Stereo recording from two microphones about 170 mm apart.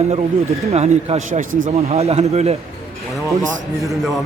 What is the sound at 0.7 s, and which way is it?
Speech, 40° right (ahead or behind).